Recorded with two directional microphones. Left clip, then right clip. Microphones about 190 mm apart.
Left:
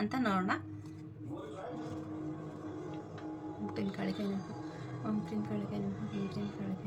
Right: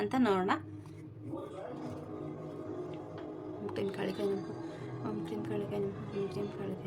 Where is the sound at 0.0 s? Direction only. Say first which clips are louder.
Right 4 dB; 45° right (ahead or behind).